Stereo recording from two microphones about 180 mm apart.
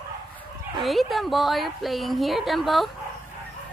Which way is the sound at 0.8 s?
Centre (ahead or behind).